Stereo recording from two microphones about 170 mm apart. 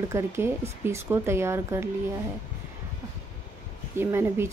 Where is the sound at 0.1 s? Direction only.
15° right (ahead or behind).